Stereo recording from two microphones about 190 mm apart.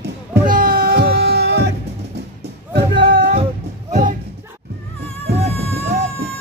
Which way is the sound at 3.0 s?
50° right (ahead or behind).